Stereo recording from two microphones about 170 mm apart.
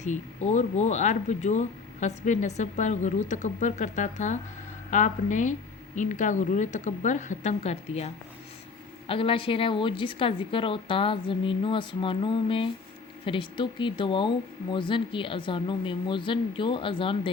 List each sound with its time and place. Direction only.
0.0 s a woman's voice: 45° left (ahead or behind)